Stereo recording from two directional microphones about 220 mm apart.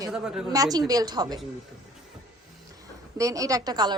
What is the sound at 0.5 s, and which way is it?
Speech, 15° right (ahead or behind).